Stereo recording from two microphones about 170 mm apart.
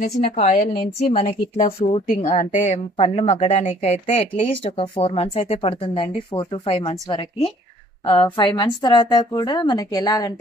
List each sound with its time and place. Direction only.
0.0 s a woman's voice: 40° left (ahead or behind); by 10.3 s 25° left (ahead or behind)